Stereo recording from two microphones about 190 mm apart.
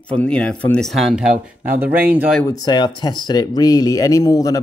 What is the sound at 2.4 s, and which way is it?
Speech, 5° left (ahead or behind).